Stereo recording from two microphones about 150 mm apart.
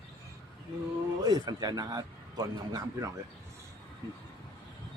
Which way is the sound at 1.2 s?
25° right (ahead or behind).